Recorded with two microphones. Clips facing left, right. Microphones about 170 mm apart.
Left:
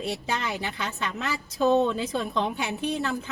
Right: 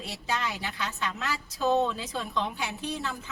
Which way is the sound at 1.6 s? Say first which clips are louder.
Left 4 dB; 55° left (ahead or behind).